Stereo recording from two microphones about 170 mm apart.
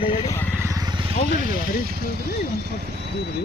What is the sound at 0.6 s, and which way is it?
Vehicle, 20° right (ahead or behind).